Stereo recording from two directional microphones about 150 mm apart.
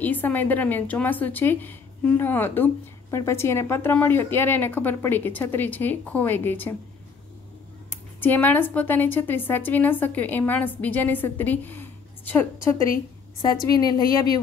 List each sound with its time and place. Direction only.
0.0 s a woman's voice: 10° left (ahead or behind)
7.9 s a woman's voice: 15° left (ahead or behind)
13.7 s a woman's voice: 25° left (ahead or behind)